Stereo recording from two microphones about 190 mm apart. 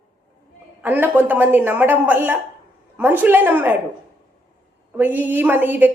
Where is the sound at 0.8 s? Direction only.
10° right (ahead or behind).